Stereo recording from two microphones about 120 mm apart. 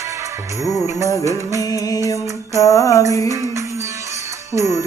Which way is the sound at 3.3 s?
25° right (ahead or behind).